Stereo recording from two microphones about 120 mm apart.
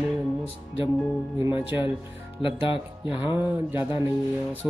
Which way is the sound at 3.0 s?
15° right (ahead or behind).